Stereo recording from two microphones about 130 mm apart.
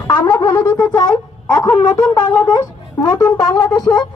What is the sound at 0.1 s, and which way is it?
Wind instrument, 30° left (ahead or behind).